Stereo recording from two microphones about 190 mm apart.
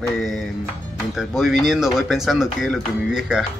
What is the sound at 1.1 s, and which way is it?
Speech, centre (ahead or behind).